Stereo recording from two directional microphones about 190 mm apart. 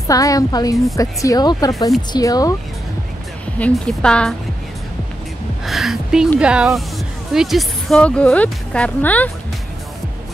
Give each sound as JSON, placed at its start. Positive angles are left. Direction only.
{"t": 0.0, "sound": "speech", "side_deg": 20}
{"t": 3.5, "sound": "a woman's voice", "side_deg": 5}
{"t": 5.7, "sound": "a woman's voice", "side_deg": 0}